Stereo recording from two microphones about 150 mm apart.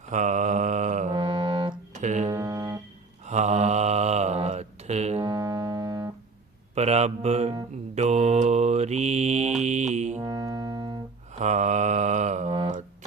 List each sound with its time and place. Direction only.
0.1 s mantra: 55° right (ahead or behind)
1.1 s music: 35° right (ahead or behind)
1.9 s music: 55° right (ahead or behind)
2.3 s a sound: 25° right (ahead or behind)
3.2 s mantra: 50° right (ahead or behind)
5.2 s music: 25° right (ahead or behind)
6.7 s mantra: 45° right (ahead or behind)
10.2 s keyboard: 25° right (ahead or behind)
11.3 s mantra: 50° right (ahead or behind)